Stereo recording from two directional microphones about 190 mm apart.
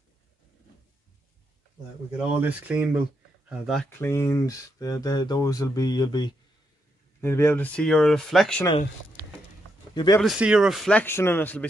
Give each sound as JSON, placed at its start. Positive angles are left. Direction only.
{"t": 2.1, "sound": "speech", "side_deg": -10}
{"t": 4.0, "sound": "speech", "side_deg": 15}
{"t": 9.9, "sound": "speech", "side_deg": 20}
{"t": 10.2, "sound": "speech", "side_deg": -5}